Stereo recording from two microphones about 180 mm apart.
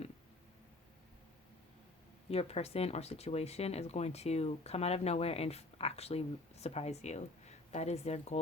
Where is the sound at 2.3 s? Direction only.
35° left (ahead or behind).